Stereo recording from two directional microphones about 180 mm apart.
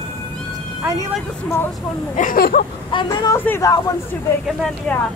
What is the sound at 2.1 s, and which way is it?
Speech, 50° left (ahead or behind).